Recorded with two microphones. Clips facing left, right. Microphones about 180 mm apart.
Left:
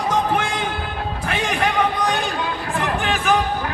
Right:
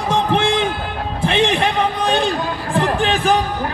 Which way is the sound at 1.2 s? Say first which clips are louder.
Right 6 dB; 30° right (ahead or behind).